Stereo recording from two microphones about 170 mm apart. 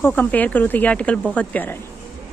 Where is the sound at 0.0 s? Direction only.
10° left (ahead or behind).